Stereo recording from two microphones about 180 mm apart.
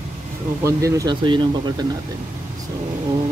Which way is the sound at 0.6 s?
15° right (ahead or behind).